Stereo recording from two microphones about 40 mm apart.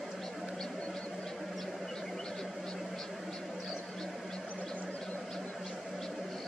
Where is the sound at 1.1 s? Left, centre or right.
Centre.